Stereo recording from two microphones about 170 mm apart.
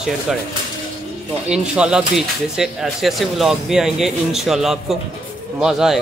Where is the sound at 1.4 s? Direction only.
5° right (ahead or behind).